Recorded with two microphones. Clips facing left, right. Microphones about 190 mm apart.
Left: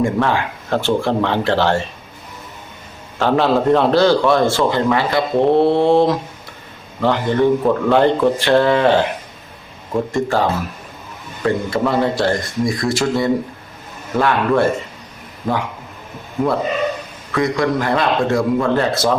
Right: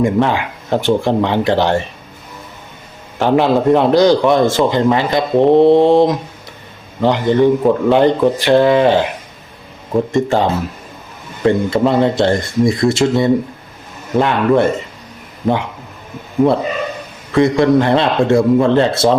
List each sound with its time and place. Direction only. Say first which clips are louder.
0.0 s a man's voice: right 3 dB; 20° right (ahead or behind)
3.2 s a man's voice: right 3 dB; 15° right (ahead or behind)
10.1 s speech: right 2 dB; 20° right (ahead or behind)
17.3 s speech: right 6 dB; 25° right (ahead or behind)